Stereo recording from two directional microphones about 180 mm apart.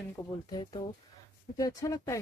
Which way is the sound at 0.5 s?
20° left (ahead or behind).